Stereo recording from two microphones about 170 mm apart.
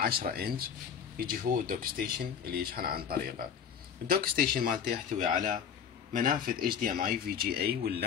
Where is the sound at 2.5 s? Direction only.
60° right (ahead or behind).